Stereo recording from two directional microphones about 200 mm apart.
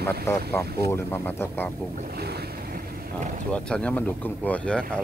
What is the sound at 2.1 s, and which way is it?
Boat, 55° right (ahead or behind).